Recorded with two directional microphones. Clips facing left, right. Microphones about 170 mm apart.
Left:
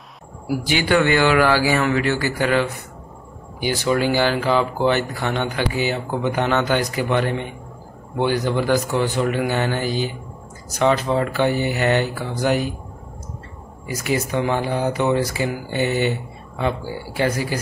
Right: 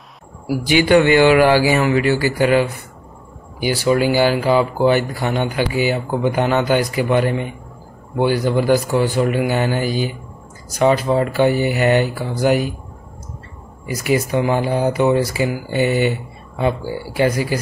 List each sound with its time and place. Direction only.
0.7 s speech: 15° right (ahead or behind)
13.8 s speech: 10° right (ahead or behind)